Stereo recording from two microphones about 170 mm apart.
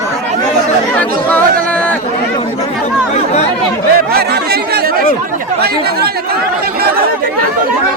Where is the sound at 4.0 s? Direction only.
65° right (ahead or behind).